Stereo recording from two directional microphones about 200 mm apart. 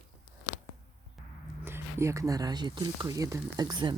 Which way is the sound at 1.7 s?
10° right (ahead or behind).